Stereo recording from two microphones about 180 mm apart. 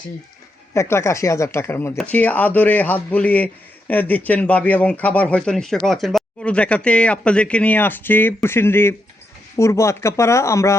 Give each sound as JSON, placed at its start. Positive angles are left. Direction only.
{"t": 0.7, "sound": "a man's voice", "side_deg": 15}